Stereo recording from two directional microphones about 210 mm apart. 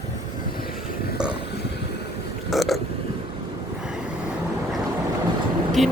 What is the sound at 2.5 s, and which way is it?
Burping, centre (ahead or behind).